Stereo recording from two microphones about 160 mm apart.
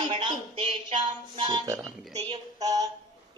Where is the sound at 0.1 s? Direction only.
30° right (ahead or behind).